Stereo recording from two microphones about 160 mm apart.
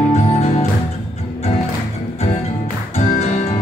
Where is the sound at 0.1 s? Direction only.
40° left (ahead or behind).